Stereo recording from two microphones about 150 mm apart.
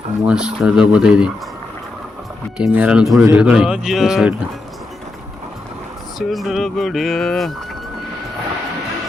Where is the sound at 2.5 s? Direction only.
10° right (ahead or behind).